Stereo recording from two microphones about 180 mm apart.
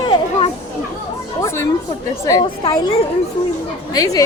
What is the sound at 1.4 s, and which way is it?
A woman's voice, 15° left (ahead or behind).